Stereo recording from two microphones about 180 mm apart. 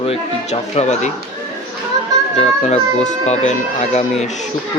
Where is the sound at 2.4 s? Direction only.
40° left (ahead or behind).